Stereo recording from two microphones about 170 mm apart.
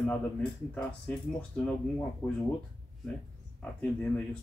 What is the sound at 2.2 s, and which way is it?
Speech, 10° left (ahead or behind).